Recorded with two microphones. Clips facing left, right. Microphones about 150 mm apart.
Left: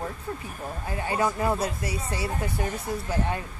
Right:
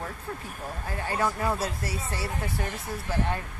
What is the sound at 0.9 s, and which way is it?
Speech, 15° left (ahead or behind).